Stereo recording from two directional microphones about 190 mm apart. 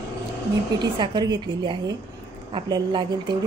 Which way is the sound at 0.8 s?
25° right (ahead or behind).